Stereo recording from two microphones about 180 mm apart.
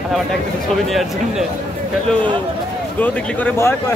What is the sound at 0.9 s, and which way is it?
Speech, centre (ahead or behind).